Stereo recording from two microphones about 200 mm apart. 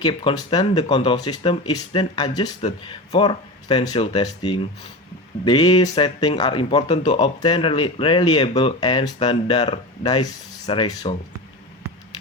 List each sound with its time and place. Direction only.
0.0 s speech: 25° left (ahead or behind)